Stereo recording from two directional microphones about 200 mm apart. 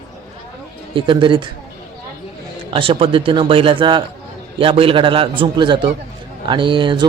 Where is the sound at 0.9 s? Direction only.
25° right (ahead or behind).